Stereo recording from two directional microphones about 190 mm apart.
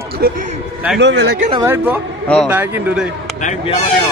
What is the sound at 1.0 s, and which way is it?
Speech, 65° right (ahead or behind).